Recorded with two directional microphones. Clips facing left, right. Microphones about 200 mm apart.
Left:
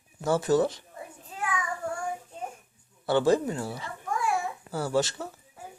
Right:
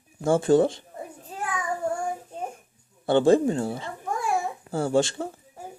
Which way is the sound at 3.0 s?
25° right (ahead or behind).